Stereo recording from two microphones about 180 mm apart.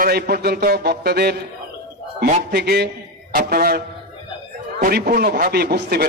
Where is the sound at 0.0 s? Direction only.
60° right (ahead or behind).